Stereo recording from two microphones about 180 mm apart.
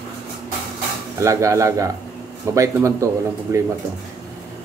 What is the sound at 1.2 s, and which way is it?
Speech, 15° right (ahead or behind).